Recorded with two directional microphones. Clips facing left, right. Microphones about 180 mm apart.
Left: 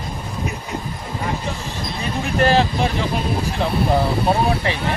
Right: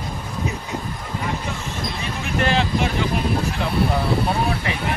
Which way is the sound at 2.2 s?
35° left (ahead or behind).